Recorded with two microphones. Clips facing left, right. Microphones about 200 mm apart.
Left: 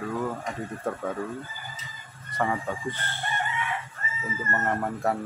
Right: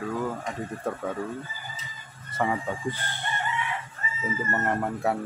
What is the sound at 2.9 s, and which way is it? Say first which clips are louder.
Crowing: even; 15° right (ahead or behind).